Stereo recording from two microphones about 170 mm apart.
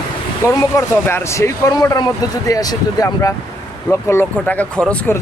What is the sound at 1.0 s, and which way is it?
Speech, 15° left (ahead or behind).